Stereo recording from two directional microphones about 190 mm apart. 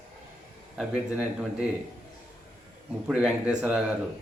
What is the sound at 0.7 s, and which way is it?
Speech, 5° right (ahead or behind).